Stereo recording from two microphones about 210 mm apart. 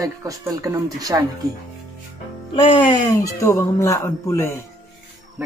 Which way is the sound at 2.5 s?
25° left (ahead or behind).